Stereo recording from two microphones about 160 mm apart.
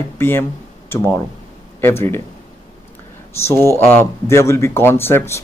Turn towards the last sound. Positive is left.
turn(degrees=15)  # may be behind; listen again after turning